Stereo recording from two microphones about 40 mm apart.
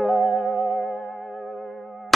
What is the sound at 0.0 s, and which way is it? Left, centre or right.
Music, centre.